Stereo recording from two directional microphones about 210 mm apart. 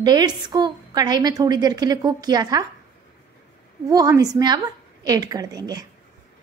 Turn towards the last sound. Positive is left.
turn(degrees=-20)  # may be behind; listen again after turning